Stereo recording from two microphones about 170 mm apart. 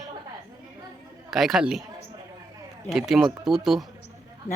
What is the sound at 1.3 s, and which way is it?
Speech, centre (ahead or behind).